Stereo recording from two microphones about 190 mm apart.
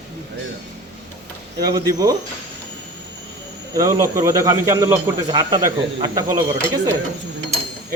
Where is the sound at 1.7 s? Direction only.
20° right (ahead or behind).